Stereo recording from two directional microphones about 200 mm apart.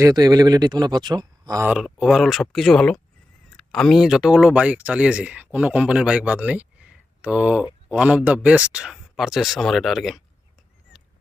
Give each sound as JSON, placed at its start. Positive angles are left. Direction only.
{"t": 0.0, "sound": "speech", "side_deg": -20}